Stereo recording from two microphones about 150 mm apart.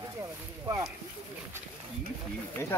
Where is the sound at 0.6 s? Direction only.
25° right (ahead or behind).